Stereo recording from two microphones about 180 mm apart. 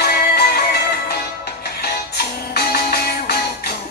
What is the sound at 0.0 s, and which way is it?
Music, 60° left (ahead or behind).